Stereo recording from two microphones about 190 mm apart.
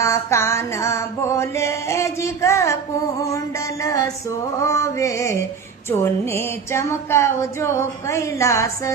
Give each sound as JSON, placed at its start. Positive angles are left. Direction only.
{"t": 0.0, "sound": "mantra", "side_deg": 15}
{"t": 3.2, "sound": "music", "side_deg": 15}
{"t": 4.6, "sound": "a sound", "side_deg": 15}